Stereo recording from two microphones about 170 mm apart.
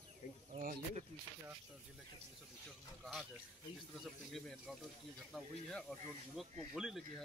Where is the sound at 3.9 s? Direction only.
Centre (ahead or behind).